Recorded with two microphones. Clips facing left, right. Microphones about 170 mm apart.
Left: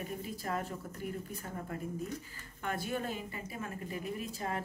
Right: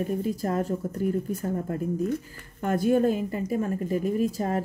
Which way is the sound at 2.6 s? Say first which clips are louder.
Right 14 dB; 45° right (ahead or behind).